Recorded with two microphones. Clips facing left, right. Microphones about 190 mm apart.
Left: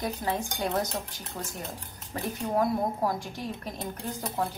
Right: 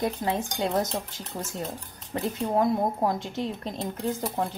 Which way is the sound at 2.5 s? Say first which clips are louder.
Right 2 dB; 20° right (ahead or behind).